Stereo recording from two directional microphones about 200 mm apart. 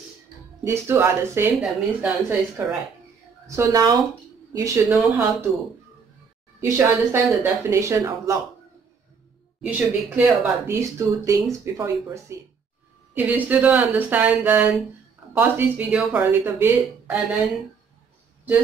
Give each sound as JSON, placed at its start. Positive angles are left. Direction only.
{"t": 0.7, "sound": "speech", "side_deg": -15}
{"t": 6.6, "sound": "speech", "side_deg": -15}
{"t": 9.6, "sound": "speech", "side_deg": -10}